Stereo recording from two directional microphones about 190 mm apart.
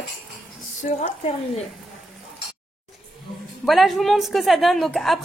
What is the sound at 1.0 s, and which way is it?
Speech, 30° left (ahead or behind).